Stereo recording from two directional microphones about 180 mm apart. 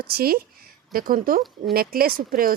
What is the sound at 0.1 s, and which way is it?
Speech, 60° right (ahead or behind).